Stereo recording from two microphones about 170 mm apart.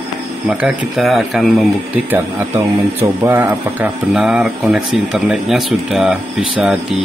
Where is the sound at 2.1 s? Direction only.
15° right (ahead or behind).